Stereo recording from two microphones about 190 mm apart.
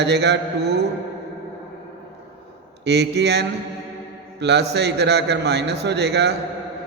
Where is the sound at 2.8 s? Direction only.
60° right (ahead or behind).